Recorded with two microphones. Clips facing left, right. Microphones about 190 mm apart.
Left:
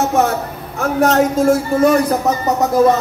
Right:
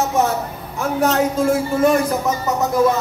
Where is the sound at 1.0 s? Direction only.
45° left (ahead or behind).